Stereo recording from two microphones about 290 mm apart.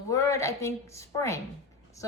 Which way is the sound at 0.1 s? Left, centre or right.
Centre.